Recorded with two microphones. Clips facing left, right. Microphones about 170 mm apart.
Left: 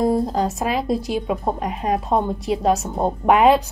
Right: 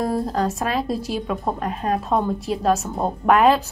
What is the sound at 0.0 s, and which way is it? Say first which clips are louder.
A woman's voice: left 3 dB; 20° left (ahead or behind).